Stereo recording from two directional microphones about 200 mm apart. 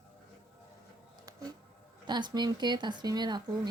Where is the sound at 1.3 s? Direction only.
15° right (ahead or behind).